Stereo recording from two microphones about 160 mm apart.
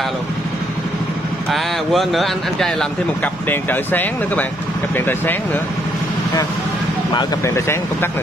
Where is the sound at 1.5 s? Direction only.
Centre (ahead or behind).